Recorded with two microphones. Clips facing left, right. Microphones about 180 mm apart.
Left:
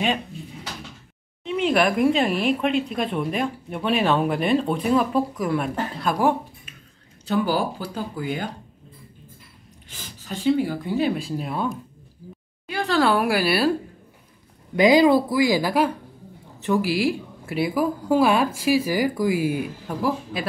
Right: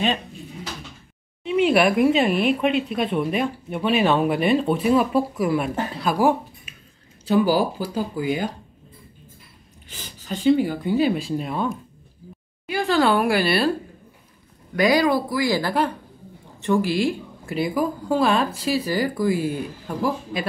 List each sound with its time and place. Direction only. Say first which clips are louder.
1.4 s speech: right 3 dB; 10° right (ahead or behind)
10.0 s speech: right 3 dB; centre (ahead or behind)
14.8 s speech: left 3 dB; 20° left (ahead or behind)